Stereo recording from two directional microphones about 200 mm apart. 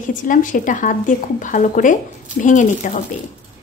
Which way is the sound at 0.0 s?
40° left (ahead or behind).